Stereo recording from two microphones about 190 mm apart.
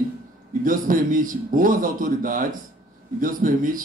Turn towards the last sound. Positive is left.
turn(degrees=-45)  # may be behind; listen again after turning